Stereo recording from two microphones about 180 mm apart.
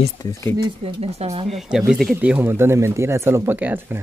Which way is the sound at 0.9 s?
35° right (ahead or behind).